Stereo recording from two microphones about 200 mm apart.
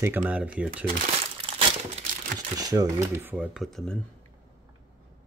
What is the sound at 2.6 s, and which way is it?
Speech, 20° right (ahead or behind).